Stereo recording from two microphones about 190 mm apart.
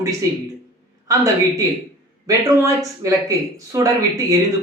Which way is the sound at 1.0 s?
15° right (ahead or behind).